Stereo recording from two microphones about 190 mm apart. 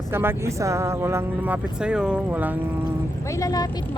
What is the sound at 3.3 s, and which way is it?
Speech, 20° left (ahead or behind).